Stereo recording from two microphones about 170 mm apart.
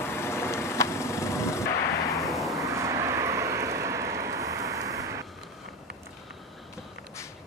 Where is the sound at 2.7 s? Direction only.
15° right (ahead or behind).